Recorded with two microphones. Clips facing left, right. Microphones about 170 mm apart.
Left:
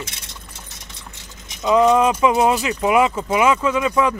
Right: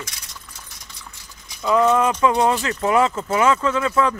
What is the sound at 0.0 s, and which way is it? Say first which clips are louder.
Boiling: left 3 dB; 25° left (ahead or behind).